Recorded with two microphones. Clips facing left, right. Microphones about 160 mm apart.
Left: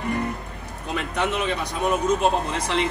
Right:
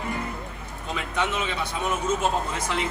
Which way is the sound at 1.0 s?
65° left (ahead or behind).